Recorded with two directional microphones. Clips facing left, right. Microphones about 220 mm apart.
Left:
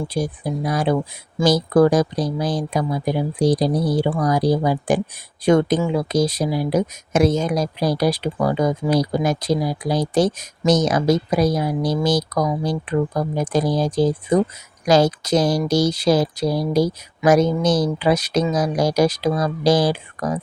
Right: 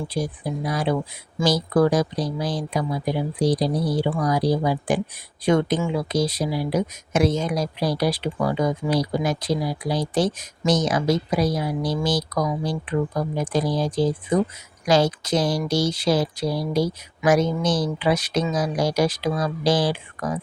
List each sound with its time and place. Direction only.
0.1 s speech: 45° left (ahead or behind)